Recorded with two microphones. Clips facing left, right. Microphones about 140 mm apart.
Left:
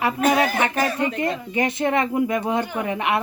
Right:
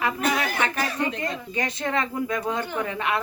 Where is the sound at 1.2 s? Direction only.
25° left (ahead or behind).